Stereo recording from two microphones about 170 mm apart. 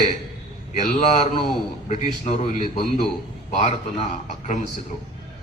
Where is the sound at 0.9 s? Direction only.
40° left (ahead or behind).